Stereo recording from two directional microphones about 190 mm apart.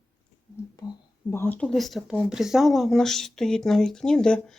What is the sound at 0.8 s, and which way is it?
Speech, 20° left (ahead or behind).